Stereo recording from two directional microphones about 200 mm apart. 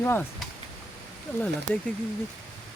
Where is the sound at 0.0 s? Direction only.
10° left (ahead or behind).